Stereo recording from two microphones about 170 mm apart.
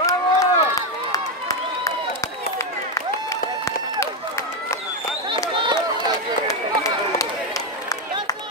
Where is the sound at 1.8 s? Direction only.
15° left (ahead or behind).